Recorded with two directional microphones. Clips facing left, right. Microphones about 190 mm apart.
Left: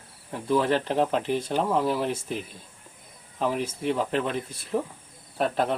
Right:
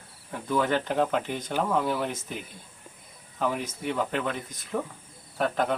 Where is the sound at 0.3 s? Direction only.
30° left (ahead or behind).